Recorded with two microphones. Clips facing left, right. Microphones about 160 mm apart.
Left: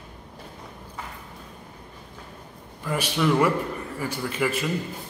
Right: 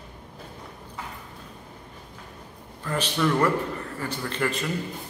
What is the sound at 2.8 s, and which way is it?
A man's voice, 10° left (ahead or behind).